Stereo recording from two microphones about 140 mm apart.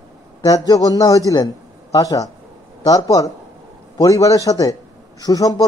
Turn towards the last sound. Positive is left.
turn(degrees=25)  # may be behind; listen again after turning